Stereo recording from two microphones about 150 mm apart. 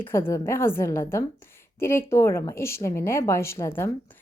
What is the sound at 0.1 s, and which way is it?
A woman's voice, 15° left (ahead or behind).